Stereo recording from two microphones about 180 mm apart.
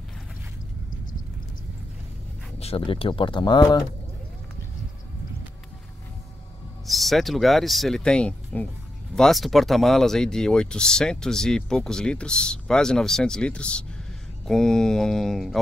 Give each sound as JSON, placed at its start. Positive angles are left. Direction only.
{"t": 2.6, "sound": "speech", "side_deg": 30}
{"t": 6.9, "sound": "speech", "side_deg": 0}